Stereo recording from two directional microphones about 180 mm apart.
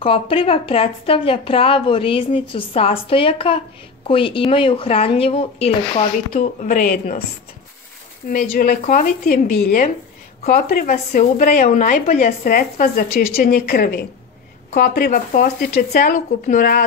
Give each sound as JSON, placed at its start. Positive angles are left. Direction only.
{"t": 0.0, "sound": "a woman's voice", "side_deg": 30}
{"t": 6.3, "sound": "a woman's voice", "side_deg": 45}
{"t": 8.3, "sound": "a woman's voice", "side_deg": 50}